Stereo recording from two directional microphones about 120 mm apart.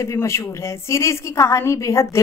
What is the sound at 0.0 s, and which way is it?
A woman's voice, 25° left (ahead or behind).